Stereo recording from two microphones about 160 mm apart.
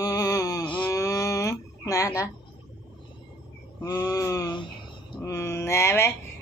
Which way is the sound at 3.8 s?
25° left (ahead or behind).